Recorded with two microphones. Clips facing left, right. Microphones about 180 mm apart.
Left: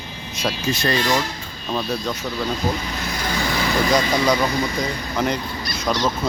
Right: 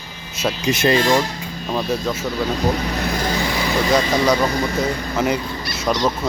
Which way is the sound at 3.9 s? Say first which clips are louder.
Right 3 dB; 5° right (ahead or behind).